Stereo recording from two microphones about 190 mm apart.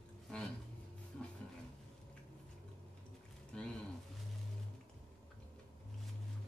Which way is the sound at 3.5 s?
5° left (ahead or behind).